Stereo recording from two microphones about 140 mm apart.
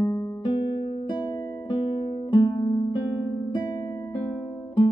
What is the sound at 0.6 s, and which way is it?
Music, 40° left (ahead or behind).